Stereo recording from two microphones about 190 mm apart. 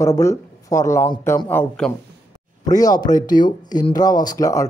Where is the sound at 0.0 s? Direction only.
15° left (ahead or behind).